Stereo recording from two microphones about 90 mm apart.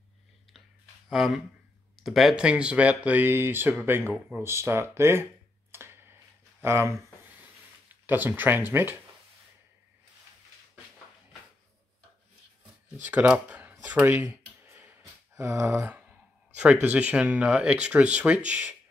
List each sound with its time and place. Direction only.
1.0 s a sound: centre (ahead or behind)
2.0 s speech: centre (ahead or behind); by 5.2 s 30° right (ahead or behind)
5.7 s a sound: 25° right (ahead or behind)
6.6 s speech: 30° right (ahead or behind)
8.1 s speech: 20° right (ahead or behind)
13.0 s speech: 15° right (ahead or behind)